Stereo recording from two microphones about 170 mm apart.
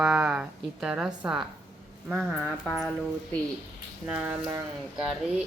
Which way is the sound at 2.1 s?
Centre (ahead or behind).